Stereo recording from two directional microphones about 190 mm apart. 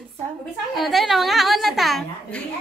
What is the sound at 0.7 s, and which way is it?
A woman's voice, centre (ahead or behind).